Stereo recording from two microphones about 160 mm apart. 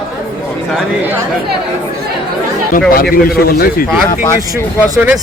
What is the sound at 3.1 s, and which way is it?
Speech, 65° left (ahead or behind).